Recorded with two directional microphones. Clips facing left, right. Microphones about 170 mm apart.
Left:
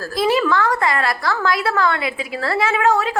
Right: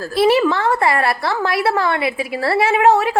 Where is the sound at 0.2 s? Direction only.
25° right (ahead or behind).